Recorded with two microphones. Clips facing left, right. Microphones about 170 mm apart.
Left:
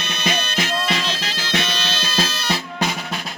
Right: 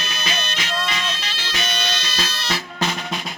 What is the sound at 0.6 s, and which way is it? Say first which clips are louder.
Music: left 4 dB; 70° left (ahead or behind).